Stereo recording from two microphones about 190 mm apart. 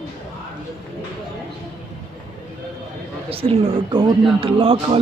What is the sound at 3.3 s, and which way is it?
Speech, 30° right (ahead or behind).